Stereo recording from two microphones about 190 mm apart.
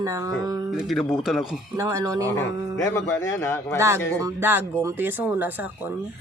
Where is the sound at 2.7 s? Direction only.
15° left (ahead or behind).